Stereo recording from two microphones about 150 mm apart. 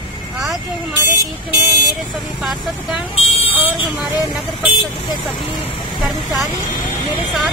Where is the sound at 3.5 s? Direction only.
10° right (ahead or behind).